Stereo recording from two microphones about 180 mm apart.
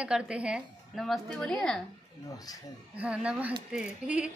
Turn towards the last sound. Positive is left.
turn(degrees=-5)  # may be behind; listen again after turning